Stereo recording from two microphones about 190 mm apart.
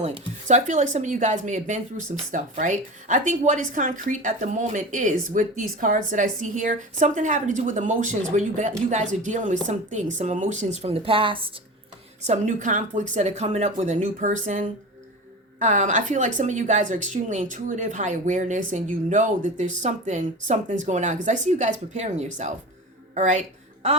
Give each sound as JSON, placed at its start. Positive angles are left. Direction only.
{"t": 0.0, "sound": "a woman's voice", "side_deg": -35}
{"t": 12.2, "sound": "a woman's voice", "side_deg": -40}